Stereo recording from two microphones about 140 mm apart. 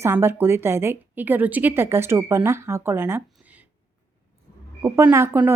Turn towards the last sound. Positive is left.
turn(degrees=-15)  # may be behind; listen again after turning